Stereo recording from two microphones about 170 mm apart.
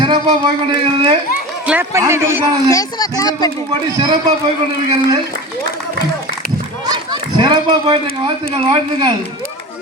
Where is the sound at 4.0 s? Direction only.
25° right (ahead or behind).